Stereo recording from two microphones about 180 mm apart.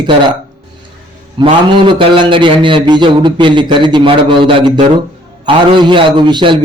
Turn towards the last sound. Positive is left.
turn(degrees=-25)  # may be behind; listen again after turning